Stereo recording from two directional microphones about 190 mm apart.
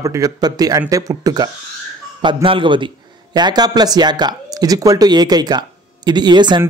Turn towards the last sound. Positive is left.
turn(degrees=-25)  # may be behind; listen again after turning